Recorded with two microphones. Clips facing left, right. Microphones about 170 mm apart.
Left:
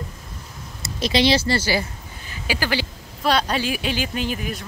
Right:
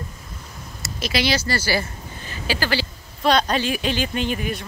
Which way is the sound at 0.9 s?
30° left (ahead or behind).